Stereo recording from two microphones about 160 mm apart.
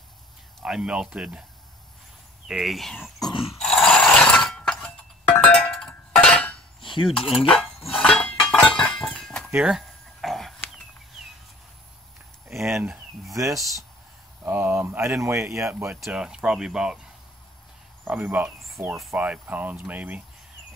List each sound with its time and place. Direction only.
0.6 s speech: 5° right (ahead or behind)
2.4 s speech: centre (ahead or behind)
3.6 s dog: 5° left (ahead or behind)
5.4 s cowbell: 10° left (ahead or behind)
6.8 s cutlery: 30° left (ahead or behind)
7.1 s speech: centre (ahead or behind)
7.9 s chink: 5° left (ahead or behind)
9.1 s a sound: 5° left (ahead or behind)
12.4 s speech: centre (ahead or behind)
16.0 s speech: 5° right (ahead or behind)
18.0 s speech: 10° right (ahead or behind)